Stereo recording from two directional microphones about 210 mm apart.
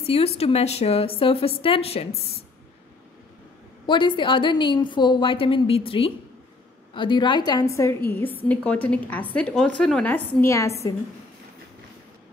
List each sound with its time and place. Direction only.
0.0 s a woman's voice: 30° left (ahead or behind)
3.8 s a woman's voice: 20° left (ahead or behind)